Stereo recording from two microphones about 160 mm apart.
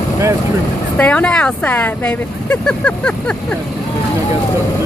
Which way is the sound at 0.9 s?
10° left (ahead or behind).